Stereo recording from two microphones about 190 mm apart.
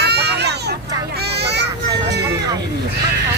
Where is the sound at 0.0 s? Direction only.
60° right (ahead or behind).